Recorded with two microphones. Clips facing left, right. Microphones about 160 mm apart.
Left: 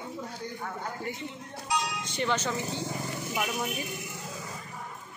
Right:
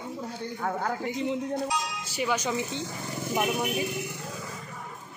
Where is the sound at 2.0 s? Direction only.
5° right (ahead or behind).